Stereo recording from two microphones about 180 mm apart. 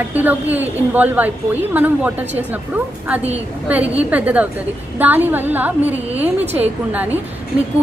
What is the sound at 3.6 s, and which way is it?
A woman's voice, 10° right (ahead or behind).